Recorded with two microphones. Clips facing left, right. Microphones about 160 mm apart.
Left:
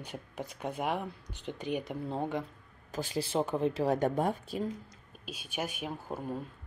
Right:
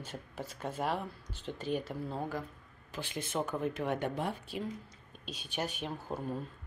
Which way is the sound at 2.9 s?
40° left (ahead or behind).